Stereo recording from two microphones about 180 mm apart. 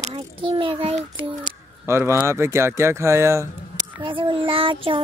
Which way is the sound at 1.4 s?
15° right (ahead or behind).